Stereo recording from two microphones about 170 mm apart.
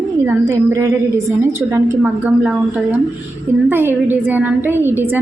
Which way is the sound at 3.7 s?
10° right (ahead or behind).